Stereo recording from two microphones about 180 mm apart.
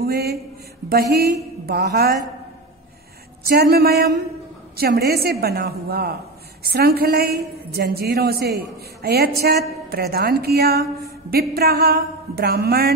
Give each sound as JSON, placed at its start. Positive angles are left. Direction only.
{"t": 0.0, "sound": "a woman's voice", "side_deg": -60}
{"t": 3.4, "sound": "a woman's voice", "side_deg": -60}